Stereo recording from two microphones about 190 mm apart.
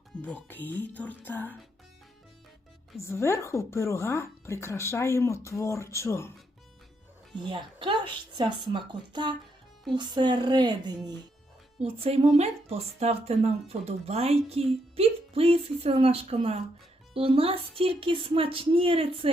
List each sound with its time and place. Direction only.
0.2 s speech: 10° left (ahead or behind)
3.0 s speech: 15° left (ahead or behind)
7.4 s speech: 25° right (ahead or behind)
11.8 s speech: 35° right (ahead or behind)